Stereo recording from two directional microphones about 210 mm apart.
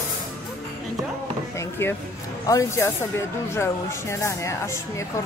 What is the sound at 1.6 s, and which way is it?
Speech, 10° left (ahead or behind).